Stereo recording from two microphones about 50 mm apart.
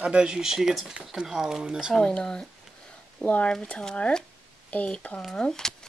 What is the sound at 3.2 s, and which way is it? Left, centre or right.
Speech, left.